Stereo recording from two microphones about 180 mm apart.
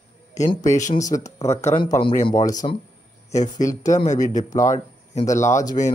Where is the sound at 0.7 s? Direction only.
40° left (ahead or behind).